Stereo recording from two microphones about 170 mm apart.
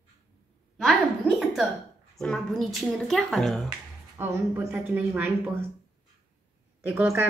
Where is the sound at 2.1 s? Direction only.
5° left (ahead or behind).